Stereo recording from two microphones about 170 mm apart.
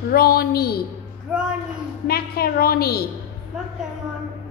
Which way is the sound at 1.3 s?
5° right (ahead or behind).